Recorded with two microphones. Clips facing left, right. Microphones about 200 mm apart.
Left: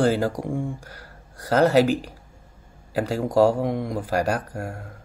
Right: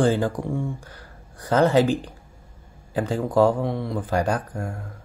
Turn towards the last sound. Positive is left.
turn(degrees=10)  # may be behind; listen again after turning